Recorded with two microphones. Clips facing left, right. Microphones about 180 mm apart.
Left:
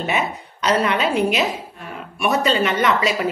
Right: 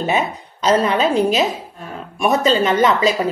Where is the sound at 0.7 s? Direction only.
35° right (ahead or behind).